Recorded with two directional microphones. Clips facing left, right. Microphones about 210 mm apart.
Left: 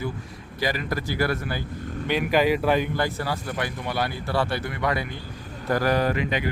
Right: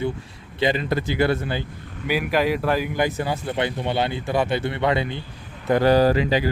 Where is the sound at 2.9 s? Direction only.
20° right (ahead or behind).